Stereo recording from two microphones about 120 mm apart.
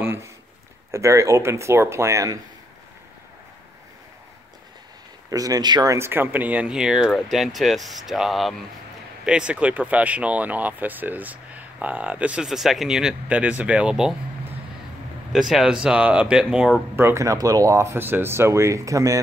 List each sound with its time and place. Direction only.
0.0 s a sound: 20° right (ahead or behind)
0.9 s speech: 25° right (ahead or behind)
5.3 s speech: 30° right (ahead or behind); by 14.1 s 5° right (ahead or behind)
15.3 s speech: centre (ahead or behind)
16.9 s speech: 20° right (ahead or behind)